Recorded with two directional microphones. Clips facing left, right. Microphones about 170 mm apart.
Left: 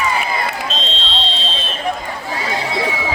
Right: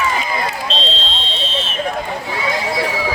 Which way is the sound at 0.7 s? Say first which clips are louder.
Right 2 dB; 35° right (ahead or behind).